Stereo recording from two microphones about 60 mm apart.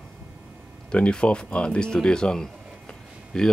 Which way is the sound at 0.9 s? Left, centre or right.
Centre.